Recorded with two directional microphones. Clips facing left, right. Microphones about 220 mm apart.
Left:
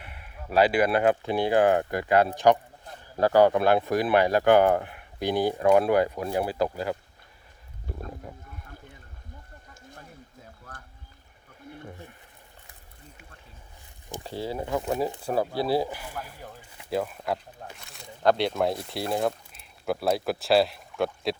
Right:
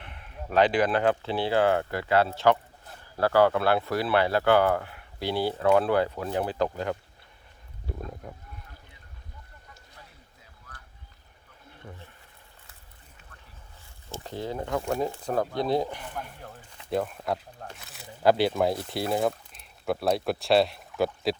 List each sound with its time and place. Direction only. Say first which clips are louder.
0.0 s speech: right 2 dB; 10° left (ahead or behind)
10.7 s a sound: left 4 dB; 50° left (ahead or behind)
14.1 s speech: left 1 dB; 10° left (ahead or behind)